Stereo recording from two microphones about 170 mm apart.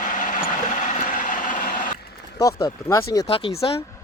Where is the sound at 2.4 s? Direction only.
20° left (ahead or behind).